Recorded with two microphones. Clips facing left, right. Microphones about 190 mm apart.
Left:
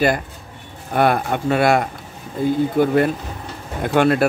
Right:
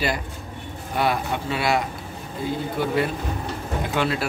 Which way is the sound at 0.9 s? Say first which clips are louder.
Left 6 dB; 55° left (ahead or behind).